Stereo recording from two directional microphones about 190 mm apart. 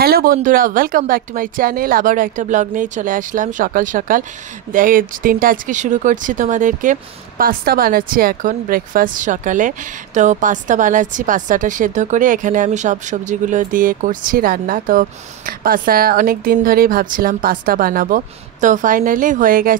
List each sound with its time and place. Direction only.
0.0 s speech: 50° right (ahead or behind)